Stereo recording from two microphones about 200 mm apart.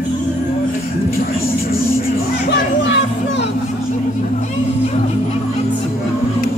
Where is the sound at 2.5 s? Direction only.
65° left (ahead or behind).